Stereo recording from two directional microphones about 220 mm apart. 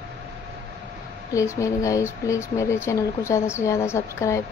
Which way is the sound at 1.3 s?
15° left (ahead or behind).